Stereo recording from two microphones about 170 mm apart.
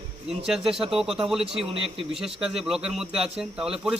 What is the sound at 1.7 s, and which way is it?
Speech, 30° right (ahead or behind).